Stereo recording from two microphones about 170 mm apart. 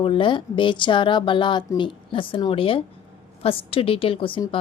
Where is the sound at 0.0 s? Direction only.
30° left (ahead or behind).